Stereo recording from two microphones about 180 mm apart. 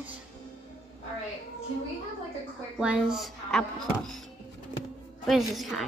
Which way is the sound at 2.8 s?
5° right (ahead or behind).